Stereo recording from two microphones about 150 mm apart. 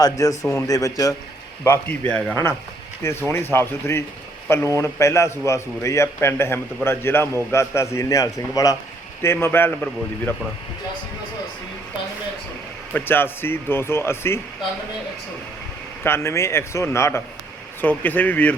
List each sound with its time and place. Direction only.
0.0 s a man's voice: 25° left (ahead or behind)
12.9 s a man's voice: 15° left (ahead or behind)
16.0 s a man's voice: 15° left (ahead or behind)